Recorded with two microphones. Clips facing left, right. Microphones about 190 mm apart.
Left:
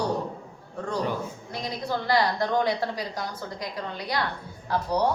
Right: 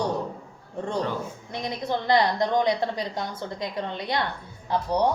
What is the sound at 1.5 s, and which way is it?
A woman's voice, 20° right (ahead or behind).